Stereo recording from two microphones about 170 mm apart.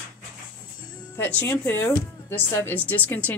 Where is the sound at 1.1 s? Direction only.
10° left (ahead or behind).